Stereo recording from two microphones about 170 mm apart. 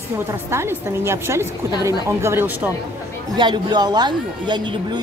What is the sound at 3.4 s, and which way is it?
Speech, 25° right (ahead or behind).